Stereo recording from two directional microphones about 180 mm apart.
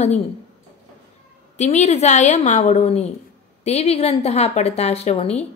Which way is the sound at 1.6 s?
40° left (ahead or behind).